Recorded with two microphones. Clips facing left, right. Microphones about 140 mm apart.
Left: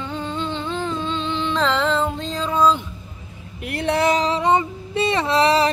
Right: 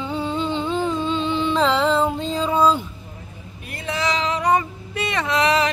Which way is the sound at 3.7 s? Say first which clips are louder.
Left 6 dB; 65° left (ahead or behind).